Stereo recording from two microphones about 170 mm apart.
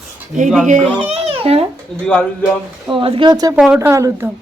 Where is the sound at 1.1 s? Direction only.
35° right (ahead or behind).